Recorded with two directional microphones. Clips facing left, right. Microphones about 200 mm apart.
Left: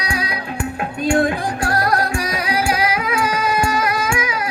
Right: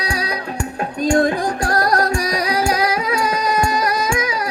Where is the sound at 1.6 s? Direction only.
40° right (ahead or behind).